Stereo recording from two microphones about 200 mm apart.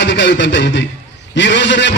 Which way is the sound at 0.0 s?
60° left (ahead or behind).